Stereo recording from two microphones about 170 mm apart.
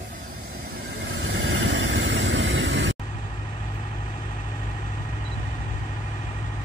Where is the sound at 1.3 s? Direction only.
90° right.